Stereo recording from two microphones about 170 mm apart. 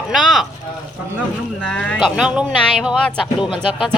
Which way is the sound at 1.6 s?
5° left (ahead or behind).